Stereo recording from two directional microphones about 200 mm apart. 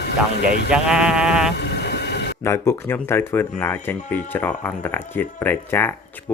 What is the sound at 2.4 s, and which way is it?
Speech, 10° left (ahead or behind).